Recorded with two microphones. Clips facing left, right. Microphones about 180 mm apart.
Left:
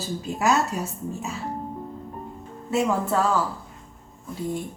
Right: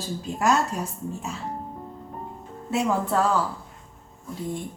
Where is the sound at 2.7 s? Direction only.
Centre (ahead or behind).